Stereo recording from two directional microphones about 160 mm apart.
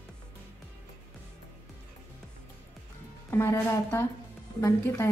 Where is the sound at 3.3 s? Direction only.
15° left (ahead or behind).